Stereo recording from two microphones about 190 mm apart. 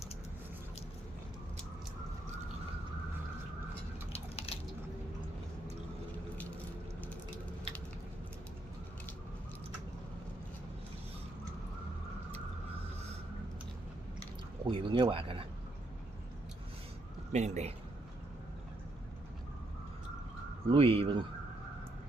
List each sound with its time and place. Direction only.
4.1 s a sound: 30° left (ahead or behind)
14.7 s speech: 25° right (ahead or behind)
17.3 s a man's voice: 35° right (ahead or behind)
20.7 s speech: 30° right (ahead or behind)